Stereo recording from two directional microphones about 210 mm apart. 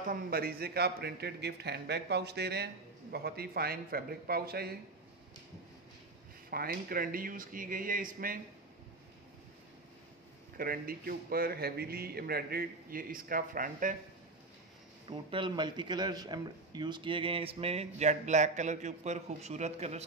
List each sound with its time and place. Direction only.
0.0 s a man's voice: 45° right (ahead or behind)
6.5 s a man's voice: 45° right (ahead or behind)
10.6 s a man's voice: 45° right (ahead or behind)
15.0 s a man's voice: 20° right (ahead or behind)